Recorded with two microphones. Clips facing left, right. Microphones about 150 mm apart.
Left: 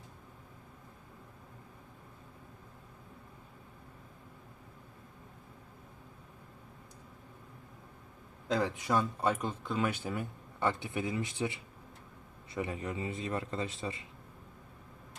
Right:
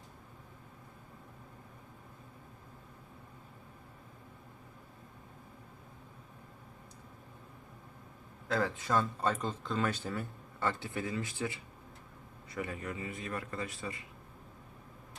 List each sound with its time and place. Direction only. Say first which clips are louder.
8.4 s a man's voice: left 1 dB; 15° left (ahead or behind)